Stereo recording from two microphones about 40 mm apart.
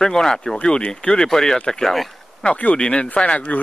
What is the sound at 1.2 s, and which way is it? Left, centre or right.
Speech, centre.